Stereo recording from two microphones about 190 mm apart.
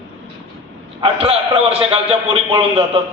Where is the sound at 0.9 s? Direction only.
30° right (ahead or behind).